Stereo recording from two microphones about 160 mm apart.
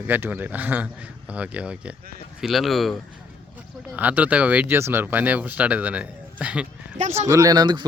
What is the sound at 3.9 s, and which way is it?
Speech, 10° right (ahead or behind).